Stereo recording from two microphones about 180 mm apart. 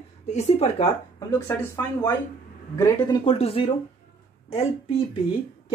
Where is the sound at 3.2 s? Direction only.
30° left (ahead or behind).